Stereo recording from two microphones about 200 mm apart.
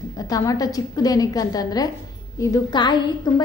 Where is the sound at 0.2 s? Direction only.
20° left (ahead or behind).